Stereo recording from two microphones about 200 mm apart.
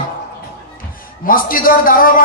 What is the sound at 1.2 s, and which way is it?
Speech, 45° left (ahead or behind).